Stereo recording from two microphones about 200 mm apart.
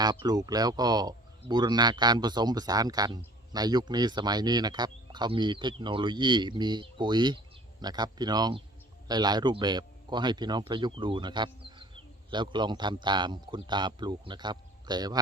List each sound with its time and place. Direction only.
0.0 s speech: 20° right (ahead or behind)